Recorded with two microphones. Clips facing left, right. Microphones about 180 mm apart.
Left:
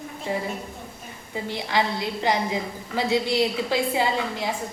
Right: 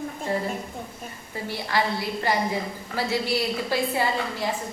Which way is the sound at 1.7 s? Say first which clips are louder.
Left 1 dB; 20° left (ahead or behind).